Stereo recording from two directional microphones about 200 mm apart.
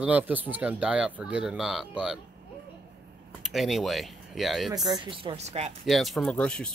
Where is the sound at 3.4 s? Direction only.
Centre (ahead or behind).